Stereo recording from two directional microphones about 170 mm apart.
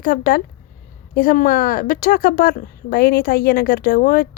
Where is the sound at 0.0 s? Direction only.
55° left (ahead or behind).